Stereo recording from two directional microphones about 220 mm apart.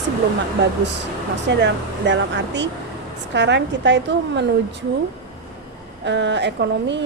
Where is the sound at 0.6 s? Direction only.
50° right (ahead or behind).